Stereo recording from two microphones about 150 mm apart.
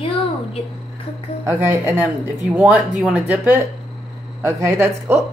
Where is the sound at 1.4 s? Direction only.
15° right (ahead or behind).